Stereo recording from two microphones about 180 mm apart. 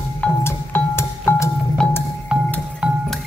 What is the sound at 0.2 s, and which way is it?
Music, 10° left (ahead or behind).